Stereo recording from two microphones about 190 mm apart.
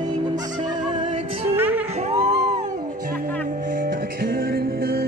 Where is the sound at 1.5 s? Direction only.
10° right (ahead or behind).